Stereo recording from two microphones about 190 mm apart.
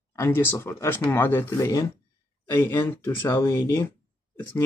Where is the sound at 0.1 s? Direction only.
15° left (ahead or behind).